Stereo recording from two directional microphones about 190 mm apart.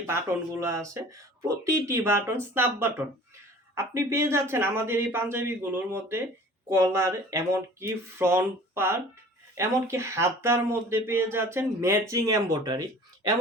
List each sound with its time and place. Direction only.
0.1 s speech: 10° right (ahead or behind)